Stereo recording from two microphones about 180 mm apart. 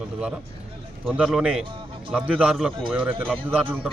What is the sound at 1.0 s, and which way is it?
Speech, 5° right (ahead or behind).